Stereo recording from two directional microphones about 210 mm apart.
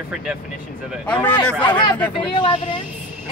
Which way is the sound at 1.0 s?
5° left (ahead or behind).